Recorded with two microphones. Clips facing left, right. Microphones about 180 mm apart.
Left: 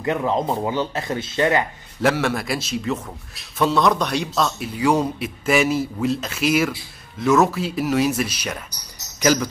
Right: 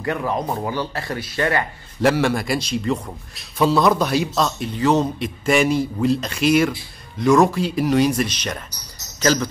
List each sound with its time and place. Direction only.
0.0 s a man's voice: 20° left (ahead or behind)
2.0 s a man's voice: centre (ahead or behind)